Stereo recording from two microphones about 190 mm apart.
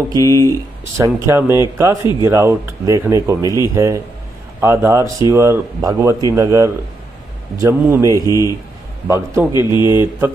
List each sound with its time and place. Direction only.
0.2 s speech: 15° left (ahead or behind)
0.9 s speech: 15° right (ahead or behind)
3.4 s a man's voice: 20° left (ahead or behind)
3.7 s speech: 15° right (ahead or behind)
8.3 s a man's voice: 20° left (ahead or behind)
9.0 s speech: 15° right (ahead or behind)